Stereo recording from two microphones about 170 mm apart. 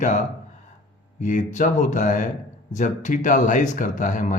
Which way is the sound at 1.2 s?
45° left (ahead or behind).